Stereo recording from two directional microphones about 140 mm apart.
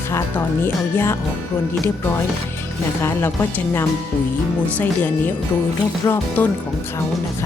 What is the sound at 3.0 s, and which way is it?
Speech, 15° left (ahead or behind).